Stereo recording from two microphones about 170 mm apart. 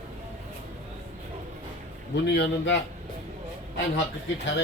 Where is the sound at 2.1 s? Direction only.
90° left.